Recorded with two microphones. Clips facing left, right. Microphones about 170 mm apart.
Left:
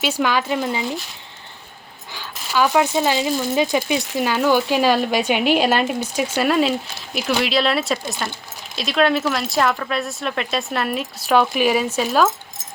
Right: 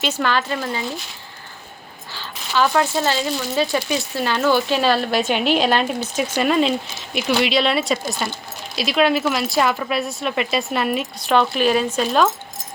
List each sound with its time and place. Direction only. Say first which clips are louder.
0.0 s speech: left 1 dB; 10° left (ahead or behind)
2.1 s speech: even; 10° left (ahead or behind)